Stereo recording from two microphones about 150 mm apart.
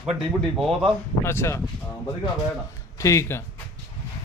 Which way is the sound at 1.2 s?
15° left (ahead or behind).